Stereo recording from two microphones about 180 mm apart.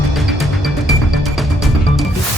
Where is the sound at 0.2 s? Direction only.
Centre (ahead or behind).